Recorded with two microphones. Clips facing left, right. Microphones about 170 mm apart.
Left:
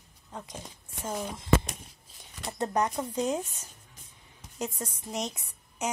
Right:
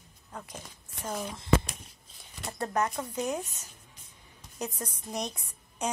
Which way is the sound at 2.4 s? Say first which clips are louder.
Left 2 dB; 20° left (ahead or behind).